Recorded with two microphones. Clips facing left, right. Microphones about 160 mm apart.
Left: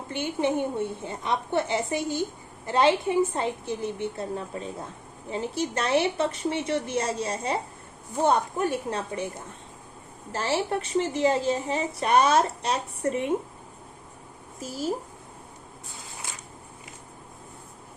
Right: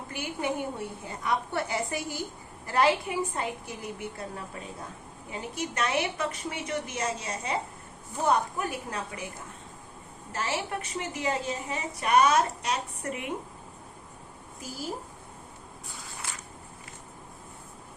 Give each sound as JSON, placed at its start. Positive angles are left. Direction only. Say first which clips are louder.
{"t": 0.1, "sound": "a woman's voice", "louder": "left 6 dB", "side_deg": 25}
{"t": 10.3, "sound": "a woman's voice", "louder": "left 5 dB", "side_deg": 30}